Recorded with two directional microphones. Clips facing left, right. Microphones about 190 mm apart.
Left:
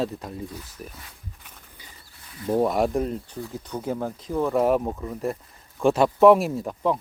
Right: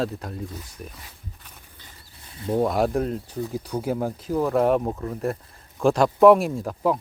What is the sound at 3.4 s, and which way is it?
Speech, 15° right (ahead or behind).